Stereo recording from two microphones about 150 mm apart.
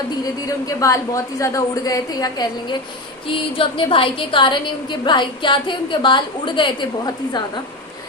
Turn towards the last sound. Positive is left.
turn(degrees=30)  # may be behind; listen again after turning